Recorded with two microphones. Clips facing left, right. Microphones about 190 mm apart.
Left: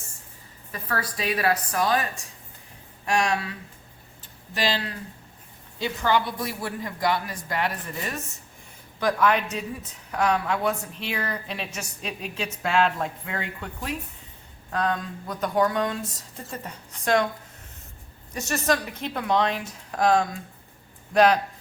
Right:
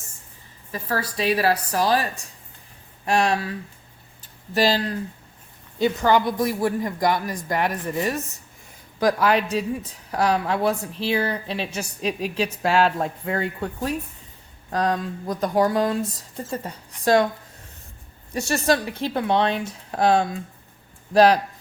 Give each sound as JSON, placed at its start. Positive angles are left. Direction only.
{"t": 0.7, "sound": "a woman's voice", "side_deg": -30}
{"t": 3.1, "sound": "a woman's voice", "side_deg": -30}
{"t": 4.5, "sound": "a woman's voice", "side_deg": -40}
{"t": 5.8, "sound": "a woman's voice", "side_deg": -45}
{"t": 14.7, "sound": "a woman's voice", "side_deg": -35}
{"t": 18.3, "sound": "a woman's voice", "side_deg": -30}